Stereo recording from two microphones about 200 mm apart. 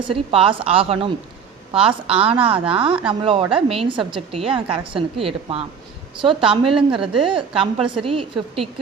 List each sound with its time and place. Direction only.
0.3 s a woman's voice: 25° right (ahead or behind)